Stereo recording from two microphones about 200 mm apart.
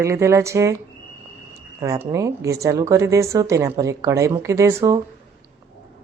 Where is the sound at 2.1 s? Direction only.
15° right (ahead or behind).